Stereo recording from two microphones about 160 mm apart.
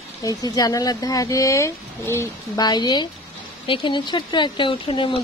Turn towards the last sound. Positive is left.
turn(degrees=30)  # may be behind; listen again after turning